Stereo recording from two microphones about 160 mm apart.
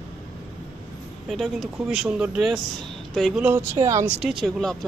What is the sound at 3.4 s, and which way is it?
Speech, 15° right (ahead or behind).